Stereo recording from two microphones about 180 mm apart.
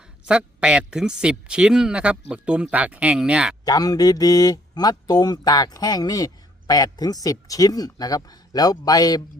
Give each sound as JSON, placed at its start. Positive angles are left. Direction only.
{"t": 0.3, "sound": "speech", "side_deg": -5}
{"t": 3.7, "sound": "speech", "side_deg": 20}